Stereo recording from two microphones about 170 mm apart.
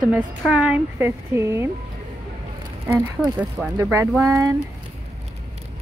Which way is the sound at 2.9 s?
15° right (ahead or behind).